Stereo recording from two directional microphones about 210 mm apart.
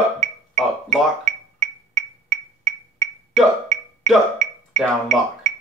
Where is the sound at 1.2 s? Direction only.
35° right (ahead or behind).